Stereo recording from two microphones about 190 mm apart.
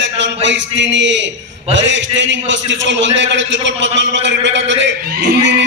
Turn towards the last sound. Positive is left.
turn(degrees=-50)  # may be behind; listen again after turning